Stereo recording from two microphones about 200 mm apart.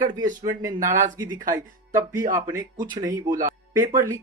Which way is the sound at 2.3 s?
15° right (ahead or behind).